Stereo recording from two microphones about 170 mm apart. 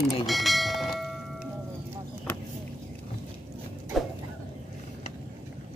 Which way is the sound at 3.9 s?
Centre (ahead or behind).